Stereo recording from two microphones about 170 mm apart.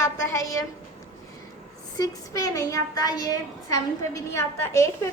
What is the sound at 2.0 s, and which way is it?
A woman's voice, 20° left (ahead or behind).